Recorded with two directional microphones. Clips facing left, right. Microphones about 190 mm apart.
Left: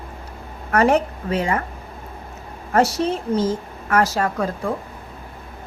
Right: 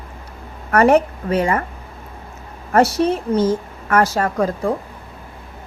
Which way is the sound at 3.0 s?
55° right (ahead or behind).